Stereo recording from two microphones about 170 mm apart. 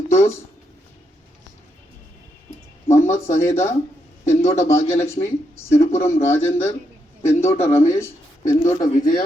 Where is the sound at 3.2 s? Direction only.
40° left (ahead or behind).